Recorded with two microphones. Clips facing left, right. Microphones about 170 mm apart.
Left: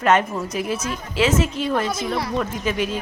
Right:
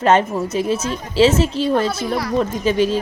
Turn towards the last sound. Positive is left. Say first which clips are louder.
# right 6 dB
turn(degrees=-30)  # may be behind; listen again after turning